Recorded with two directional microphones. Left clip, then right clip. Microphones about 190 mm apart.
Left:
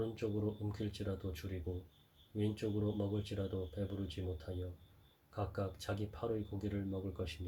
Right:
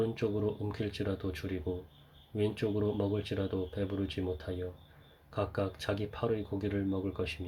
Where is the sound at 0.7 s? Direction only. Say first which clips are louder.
Right 7 dB; 35° right (ahead or behind).